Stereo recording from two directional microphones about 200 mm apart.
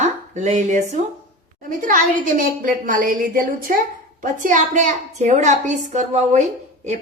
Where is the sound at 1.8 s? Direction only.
40° right (ahead or behind).